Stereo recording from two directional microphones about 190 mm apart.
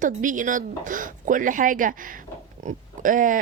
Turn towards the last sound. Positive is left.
turn(degrees=-45)  # may be behind; listen again after turning